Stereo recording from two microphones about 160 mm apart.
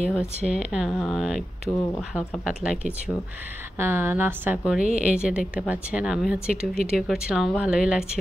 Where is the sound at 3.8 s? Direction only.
15° right (ahead or behind).